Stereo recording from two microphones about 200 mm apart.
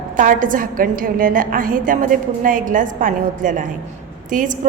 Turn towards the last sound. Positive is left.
turn(degrees=-40)  # may be behind; listen again after turning